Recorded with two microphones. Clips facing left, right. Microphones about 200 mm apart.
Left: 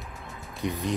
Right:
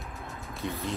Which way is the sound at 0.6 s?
15° left (ahead or behind).